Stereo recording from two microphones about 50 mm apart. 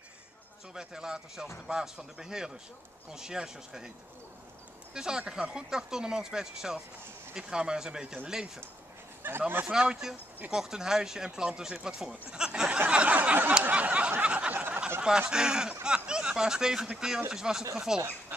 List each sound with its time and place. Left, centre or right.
0.7 s speech: centre
4.9 s speech: centre
9.2 s speech: right
9.7 s speech: centre
12.7 s a sound: right
14.2 s snicker: right
14.5 s a sound: right
15.0 s speech: centre